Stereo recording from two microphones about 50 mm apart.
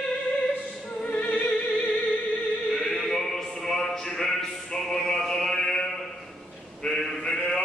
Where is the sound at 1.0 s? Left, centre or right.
Left.